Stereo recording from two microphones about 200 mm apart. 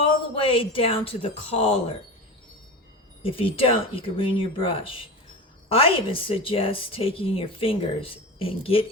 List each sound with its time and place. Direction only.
0.0 s speech: 25° left (ahead or behind)
3.2 s a woman's voice: 30° left (ahead or behind)